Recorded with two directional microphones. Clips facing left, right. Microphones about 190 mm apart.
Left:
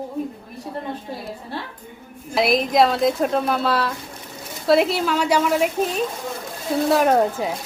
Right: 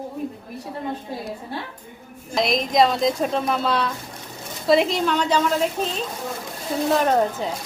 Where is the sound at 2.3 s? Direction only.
5° left (ahead or behind).